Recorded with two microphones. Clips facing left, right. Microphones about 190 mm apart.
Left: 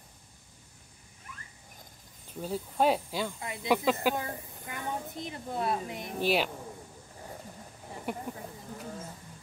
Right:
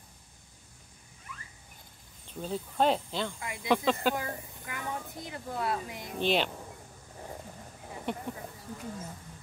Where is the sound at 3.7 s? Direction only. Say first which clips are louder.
Even; 5° left (ahead or behind).